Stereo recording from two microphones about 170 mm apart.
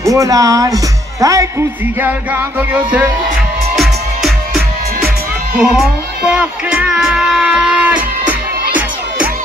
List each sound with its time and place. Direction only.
0.0 s speech: 20° right (ahead or behind)
2.0 s music: 10° right (ahead or behind)
5.6 s speech: 5° right (ahead or behind)